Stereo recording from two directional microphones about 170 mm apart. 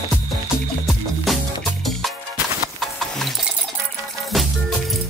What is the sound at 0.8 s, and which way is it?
Music, centre (ahead or behind).